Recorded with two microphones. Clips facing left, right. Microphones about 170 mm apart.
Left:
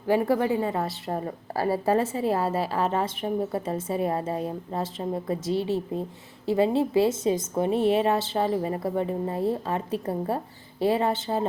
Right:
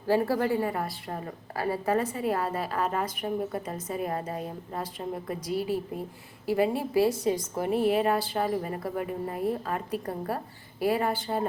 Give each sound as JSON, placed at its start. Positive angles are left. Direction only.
{"t": 0.1, "sound": "a woman's voice", "side_deg": 15}